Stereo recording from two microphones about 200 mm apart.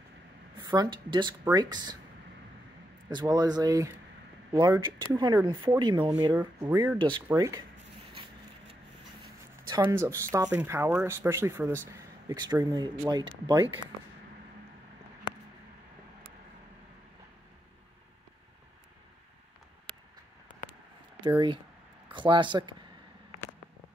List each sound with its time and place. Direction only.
0.6 s speech: 20° right (ahead or behind)
3.1 s speech: 20° right (ahead or behind)
7.0 s speech: 25° right (ahead or behind)
9.7 s speech: 15° right (ahead or behind)
22.1 s speech: 25° right (ahead or behind)